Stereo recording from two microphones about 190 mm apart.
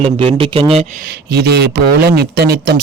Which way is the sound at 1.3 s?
60° right (ahead or behind).